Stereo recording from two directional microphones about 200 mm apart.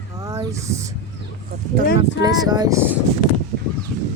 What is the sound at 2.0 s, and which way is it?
Speech, 20° right (ahead or behind).